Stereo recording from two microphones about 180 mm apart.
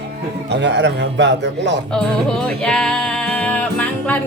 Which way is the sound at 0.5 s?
75° right (ahead or behind).